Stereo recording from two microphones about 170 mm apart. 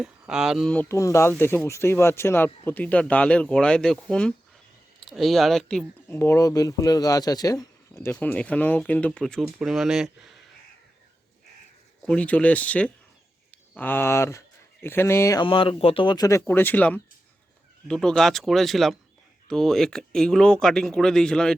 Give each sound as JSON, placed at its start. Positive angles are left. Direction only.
{"t": 0.0, "sound": "speech", "side_deg": -5}
{"t": 6.1, "sound": "speech", "side_deg": 15}
{"t": 12.0, "sound": "speech", "side_deg": 10}
{"t": 15.4, "sound": "speech", "side_deg": 30}
{"t": 16.5, "sound": "speech", "side_deg": 10}